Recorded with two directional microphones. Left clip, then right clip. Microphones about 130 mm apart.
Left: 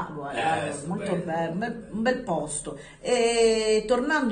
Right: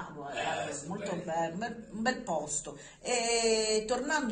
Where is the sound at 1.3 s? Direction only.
25° right (ahead or behind).